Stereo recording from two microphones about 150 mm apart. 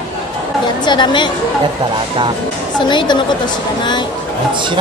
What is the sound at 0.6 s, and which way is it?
Speech, 30° left (ahead or behind).